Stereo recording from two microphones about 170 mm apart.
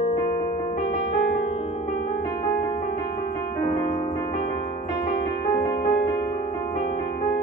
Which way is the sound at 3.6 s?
45° left (ahead or behind).